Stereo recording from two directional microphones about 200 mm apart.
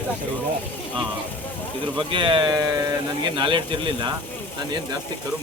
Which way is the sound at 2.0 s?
25° right (ahead or behind).